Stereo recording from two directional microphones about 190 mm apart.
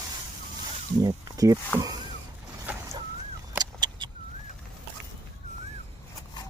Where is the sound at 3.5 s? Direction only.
20° right (ahead or behind).